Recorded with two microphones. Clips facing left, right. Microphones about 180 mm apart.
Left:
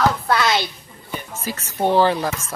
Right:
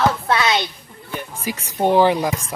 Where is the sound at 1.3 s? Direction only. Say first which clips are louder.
Right 2 dB; 15° right (ahead or behind).